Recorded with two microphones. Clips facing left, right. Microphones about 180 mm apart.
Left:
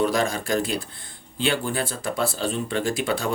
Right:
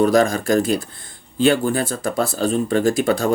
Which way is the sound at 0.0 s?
45° right (ahead or behind).